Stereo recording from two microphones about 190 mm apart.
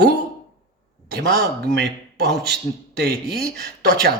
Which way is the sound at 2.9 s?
55° right (ahead or behind).